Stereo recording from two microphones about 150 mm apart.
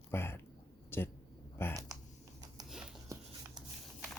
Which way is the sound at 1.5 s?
15° left (ahead or behind).